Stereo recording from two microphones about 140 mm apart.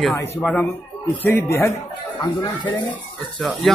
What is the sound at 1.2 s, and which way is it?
Speech, 15° left (ahead or behind).